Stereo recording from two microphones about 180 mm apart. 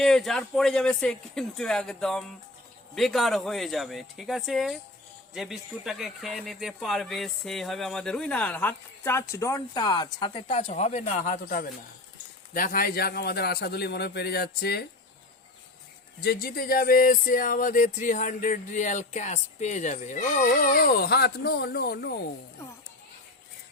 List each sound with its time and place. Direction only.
0.0 s a man's voice: centre (ahead or behind); by 14.8 s 60° left (ahead or behind)
16.2 s music: 60° left (ahead or behind)